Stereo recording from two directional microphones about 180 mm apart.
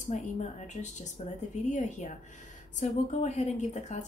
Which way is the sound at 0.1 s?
45° left (ahead or behind).